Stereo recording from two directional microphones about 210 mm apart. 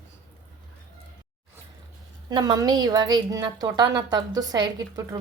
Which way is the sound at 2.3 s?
20° right (ahead or behind).